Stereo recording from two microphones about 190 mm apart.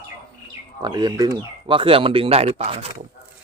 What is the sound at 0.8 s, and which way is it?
Speech, 20° right (ahead or behind).